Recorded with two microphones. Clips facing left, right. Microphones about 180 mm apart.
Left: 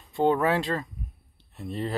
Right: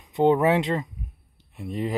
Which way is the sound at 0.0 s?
20° right (ahead or behind).